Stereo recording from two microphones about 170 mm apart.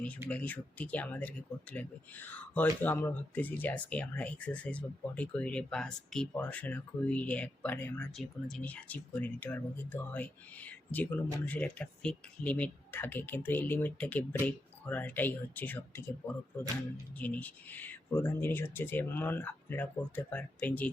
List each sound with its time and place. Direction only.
0.3 s speech: 10° left (ahead or behind)
17.2 s speech: 10° left (ahead or behind)